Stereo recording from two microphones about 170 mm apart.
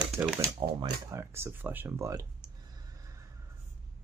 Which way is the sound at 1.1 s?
15° right (ahead or behind).